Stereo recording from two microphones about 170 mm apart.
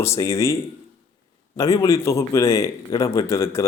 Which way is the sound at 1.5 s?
20° left (ahead or behind).